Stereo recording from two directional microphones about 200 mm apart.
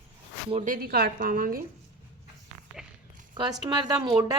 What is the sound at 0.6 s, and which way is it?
Speech, 45° right (ahead or behind).